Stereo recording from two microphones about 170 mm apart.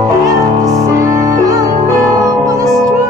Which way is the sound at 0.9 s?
20° right (ahead or behind).